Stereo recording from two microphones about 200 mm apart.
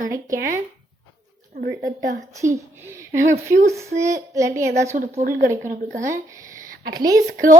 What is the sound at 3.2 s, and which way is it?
Speech, 40° right (ahead or behind).